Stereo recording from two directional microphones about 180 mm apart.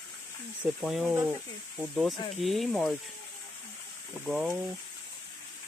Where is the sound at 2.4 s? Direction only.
Centre (ahead or behind).